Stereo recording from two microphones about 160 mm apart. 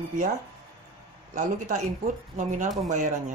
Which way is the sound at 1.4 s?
50° right (ahead or behind).